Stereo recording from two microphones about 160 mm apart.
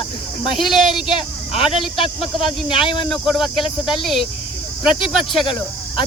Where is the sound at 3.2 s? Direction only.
Centre (ahead or behind).